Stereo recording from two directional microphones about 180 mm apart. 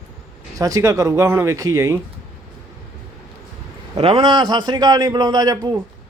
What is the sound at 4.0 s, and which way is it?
Speech, 30° right (ahead or behind).